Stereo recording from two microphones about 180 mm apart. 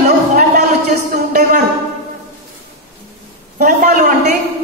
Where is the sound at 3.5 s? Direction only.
55° right (ahead or behind).